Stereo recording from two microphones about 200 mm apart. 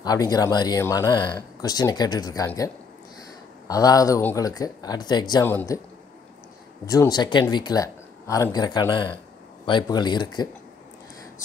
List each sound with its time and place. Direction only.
0.0 s speech: 20° left (ahead or behind)
6.9 s speech: 20° left (ahead or behind)